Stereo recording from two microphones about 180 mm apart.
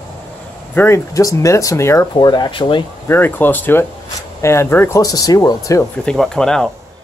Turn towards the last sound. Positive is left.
turn(degrees=5)  # may be behind; listen again after turning